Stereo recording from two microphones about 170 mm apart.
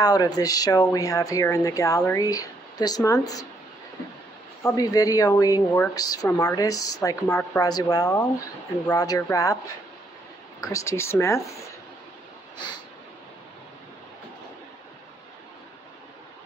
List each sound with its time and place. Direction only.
0.0 s speech: 20° left (ahead or behind)
4.6 s speech: 20° left (ahead or behind)
10.6 s speech: 20° left (ahead or behind)